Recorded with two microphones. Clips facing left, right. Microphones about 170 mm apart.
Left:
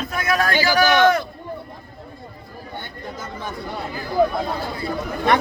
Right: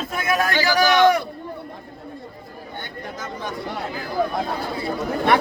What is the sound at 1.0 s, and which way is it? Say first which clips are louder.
Speech: even; 10° right (ahead or behind).